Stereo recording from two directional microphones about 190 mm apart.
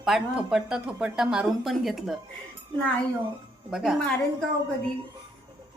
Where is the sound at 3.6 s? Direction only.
Centre (ahead or behind).